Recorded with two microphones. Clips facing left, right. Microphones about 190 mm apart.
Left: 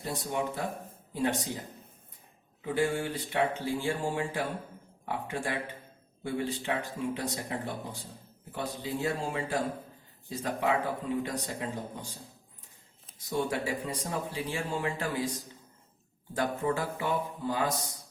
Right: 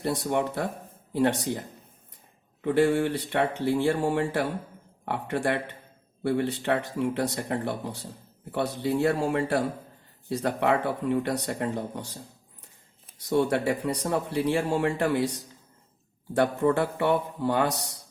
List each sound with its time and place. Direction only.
0.0 s speech: 70° right (ahead or behind)
2.6 s speech: 65° right (ahead or behind)
13.1 s speech: 70° right (ahead or behind)